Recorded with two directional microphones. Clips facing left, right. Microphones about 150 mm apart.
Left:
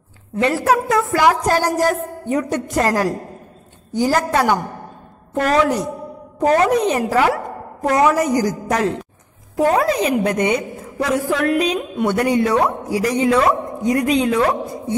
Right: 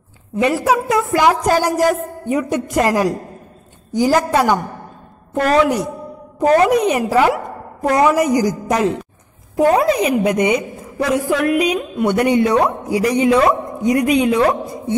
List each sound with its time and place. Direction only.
0.4 s a woman's voice: 15° right (ahead or behind)